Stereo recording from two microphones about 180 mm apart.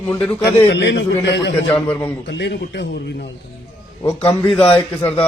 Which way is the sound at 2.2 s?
75° left (ahead or behind).